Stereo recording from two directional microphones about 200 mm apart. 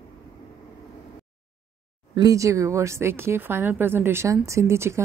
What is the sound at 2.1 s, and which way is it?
Speech, 15° right (ahead or behind).